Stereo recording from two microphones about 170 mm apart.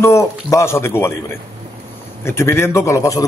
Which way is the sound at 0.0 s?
15° left (ahead or behind).